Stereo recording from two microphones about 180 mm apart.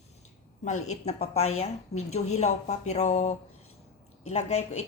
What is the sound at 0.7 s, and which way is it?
A woman's voice, 40° left (ahead or behind).